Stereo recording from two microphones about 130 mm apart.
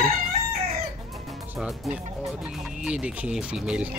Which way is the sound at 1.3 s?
Centre (ahead or behind).